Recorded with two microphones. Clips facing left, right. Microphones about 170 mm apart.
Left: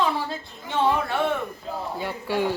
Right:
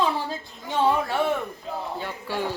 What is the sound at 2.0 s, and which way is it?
Speech, 15° left (ahead or behind).